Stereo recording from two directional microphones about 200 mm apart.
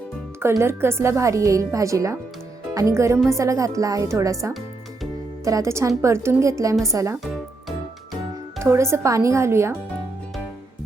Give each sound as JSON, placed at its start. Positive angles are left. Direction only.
{"t": 0.6, "sound": "speech", "side_deg": -10}
{"t": 8.5, "sound": "speech", "side_deg": -15}